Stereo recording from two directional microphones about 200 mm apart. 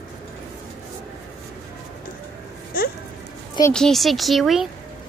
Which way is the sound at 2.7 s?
45° left (ahead or behind).